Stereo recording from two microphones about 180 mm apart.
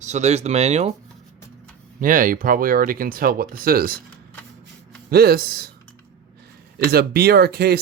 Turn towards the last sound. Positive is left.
turn(degrees=-60)  # may be behind; listen again after turning